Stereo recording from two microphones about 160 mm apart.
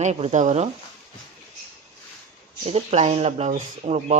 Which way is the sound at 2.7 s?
45° right (ahead or behind).